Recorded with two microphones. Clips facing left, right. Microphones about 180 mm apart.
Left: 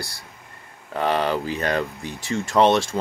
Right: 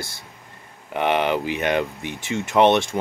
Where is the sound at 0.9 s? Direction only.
20° right (ahead or behind).